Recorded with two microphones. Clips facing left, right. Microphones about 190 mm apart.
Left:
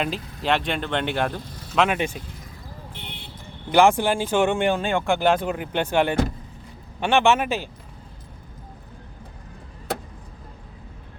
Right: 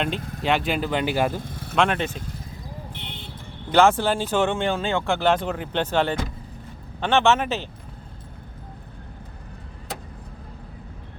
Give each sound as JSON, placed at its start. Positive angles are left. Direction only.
{"t": 0.0, "sound": "speech", "side_deg": 0}
{"t": 1.4, "sound": "vehicle", "side_deg": -55}
{"t": 1.7, "sound": "speech", "side_deg": 5}
{"t": 3.7, "sound": "speech", "side_deg": 15}